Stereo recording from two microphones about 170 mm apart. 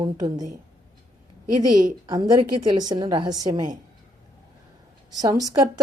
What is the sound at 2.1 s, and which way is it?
A woman's voice, 25° right (ahead or behind).